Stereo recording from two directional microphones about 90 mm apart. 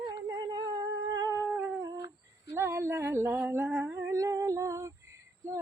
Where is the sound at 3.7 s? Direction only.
20° right (ahead or behind).